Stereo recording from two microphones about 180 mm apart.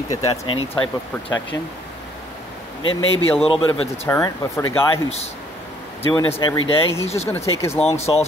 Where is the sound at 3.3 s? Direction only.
30° left (ahead or behind).